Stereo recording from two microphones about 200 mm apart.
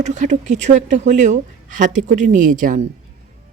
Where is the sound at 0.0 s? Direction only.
35° right (ahead or behind).